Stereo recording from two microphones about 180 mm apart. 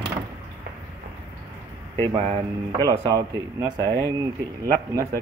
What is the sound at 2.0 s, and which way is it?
Speech, 30° right (ahead or behind).